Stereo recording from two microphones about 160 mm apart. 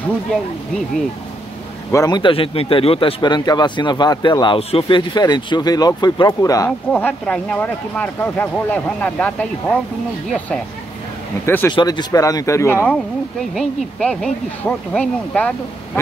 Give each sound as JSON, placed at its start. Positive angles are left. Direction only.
{"t": 1.9, "sound": "a man's voice", "side_deg": 20}
{"t": 6.9, "sound": "speech", "side_deg": 10}
{"t": 11.4, "sound": "speech", "side_deg": 15}
{"t": 11.7, "sound": "a man's voice", "side_deg": 25}
{"t": 13.6, "sound": "speech", "side_deg": 0}